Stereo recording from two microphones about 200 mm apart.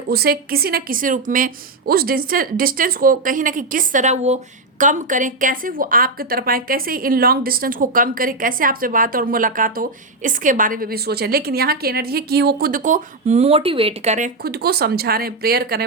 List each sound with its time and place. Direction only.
0.1 s a woman's voice: 50° right (ahead or behind)